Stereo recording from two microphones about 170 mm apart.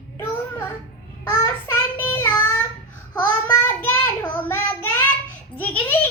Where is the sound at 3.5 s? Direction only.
10° left (ahead or behind).